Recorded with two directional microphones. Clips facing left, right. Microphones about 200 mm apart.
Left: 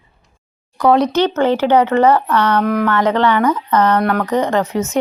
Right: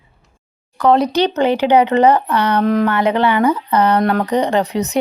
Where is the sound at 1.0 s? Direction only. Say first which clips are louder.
Even; 15° right (ahead or behind).